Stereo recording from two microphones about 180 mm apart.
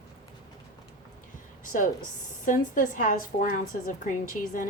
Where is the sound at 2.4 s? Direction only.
45° left (ahead or behind).